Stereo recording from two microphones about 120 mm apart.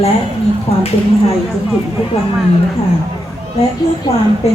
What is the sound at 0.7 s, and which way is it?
Speech, 55° left (ahead or behind).